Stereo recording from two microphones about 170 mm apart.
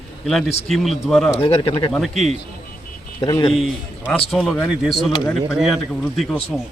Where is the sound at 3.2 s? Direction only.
20° left (ahead or behind).